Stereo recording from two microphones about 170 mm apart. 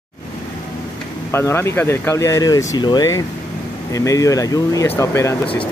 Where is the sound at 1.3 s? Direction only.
15° left (ahead or behind).